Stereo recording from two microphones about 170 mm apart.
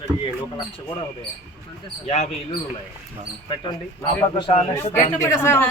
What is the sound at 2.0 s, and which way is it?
Speech, 35° left (ahead or behind).